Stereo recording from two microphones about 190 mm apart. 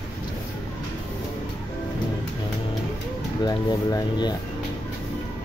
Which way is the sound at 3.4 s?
20° left (ahead or behind).